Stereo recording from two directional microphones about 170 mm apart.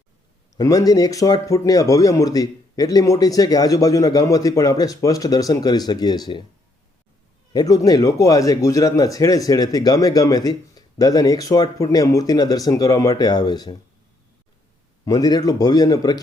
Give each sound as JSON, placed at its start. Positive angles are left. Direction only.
{"t": 0.5, "sound": "a man's voice", "side_deg": 20}
{"t": 7.5, "sound": "a man's voice", "side_deg": 20}
{"t": 15.0, "sound": "a man's voice", "side_deg": 20}